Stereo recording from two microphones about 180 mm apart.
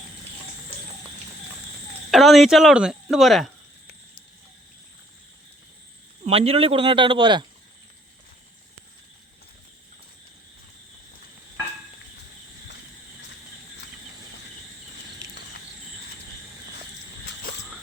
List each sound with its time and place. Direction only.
2.0 s speech: centre (ahead or behind)
6.2 s speech: 35° right (ahead or behind)